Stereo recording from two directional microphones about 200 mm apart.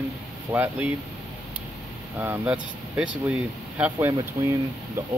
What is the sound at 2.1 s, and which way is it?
Speech, 10° right (ahead or behind).